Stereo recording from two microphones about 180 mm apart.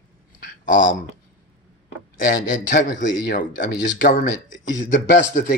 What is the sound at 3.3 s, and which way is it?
Speech, 50° left (ahead or behind).